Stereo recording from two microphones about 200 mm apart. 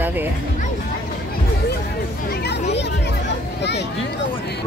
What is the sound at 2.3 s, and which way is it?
Children playing, 55° left (ahead or behind).